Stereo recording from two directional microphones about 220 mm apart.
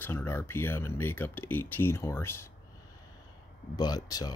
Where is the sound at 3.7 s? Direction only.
20° left (ahead or behind).